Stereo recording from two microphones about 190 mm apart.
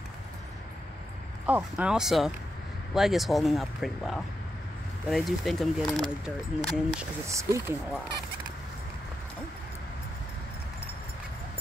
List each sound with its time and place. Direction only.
1.4 s speech: 5° right (ahead or behind)
7.2 s speech: 15° right (ahead or behind)